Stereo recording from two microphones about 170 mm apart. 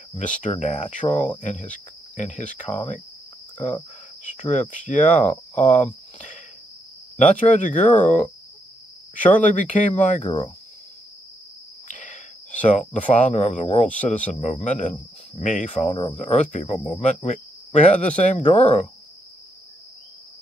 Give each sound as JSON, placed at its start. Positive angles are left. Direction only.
{"t": 0.4, "sound": "speech", "side_deg": 45}
{"t": 4.2, "sound": "speech", "side_deg": 45}
{"t": 10.2, "sound": "speech", "side_deg": 30}
{"t": 11.9, "sound": "cricket", "side_deg": 45}
{"t": 12.6, "sound": "speech", "side_deg": 45}
{"t": 17.9, "sound": "speech", "side_deg": 5}
{"t": 18.2, "sound": "speech", "side_deg": 45}